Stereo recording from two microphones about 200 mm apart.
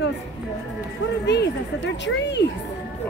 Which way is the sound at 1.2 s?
60° left (ahead or behind).